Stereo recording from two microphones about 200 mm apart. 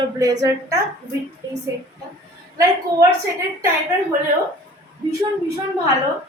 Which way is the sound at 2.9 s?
15° right (ahead or behind).